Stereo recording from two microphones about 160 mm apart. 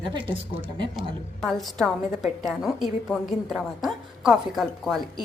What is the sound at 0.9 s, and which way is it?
A woman's voice, centre (ahead or behind).